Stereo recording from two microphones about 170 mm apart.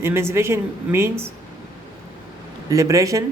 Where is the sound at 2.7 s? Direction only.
20° right (ahead or behind).